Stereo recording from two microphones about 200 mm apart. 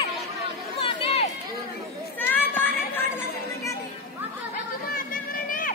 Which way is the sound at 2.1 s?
10° left (ahead or behind).